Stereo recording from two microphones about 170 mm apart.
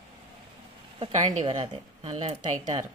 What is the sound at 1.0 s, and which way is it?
A woman's voice, 35° right (ahead or behind).